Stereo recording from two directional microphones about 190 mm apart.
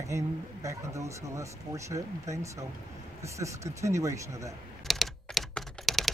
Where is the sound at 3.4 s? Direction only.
15° right (ahead or behind).